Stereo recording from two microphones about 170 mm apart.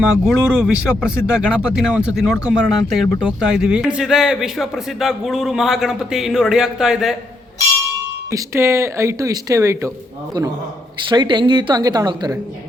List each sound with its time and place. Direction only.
0.3 s a man's voice: 5° right (ahead or behind)
8.3 s speech: 15° right (ahead or behind)
11.1 s speech: 25° right (ahead or behind)